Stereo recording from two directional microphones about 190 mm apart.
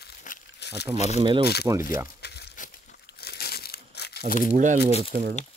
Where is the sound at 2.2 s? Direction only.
60° left (ahead or behind).